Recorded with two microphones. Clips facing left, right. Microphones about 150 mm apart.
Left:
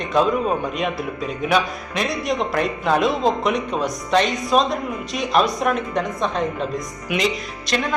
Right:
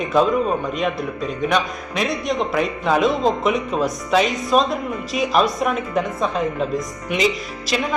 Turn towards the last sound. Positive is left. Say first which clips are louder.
# right 2 dB
turn(degrees=0)  # may be behind; listen again after turning